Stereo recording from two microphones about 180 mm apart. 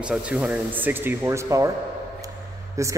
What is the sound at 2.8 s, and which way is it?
Speech, 15° right (ahead or behind).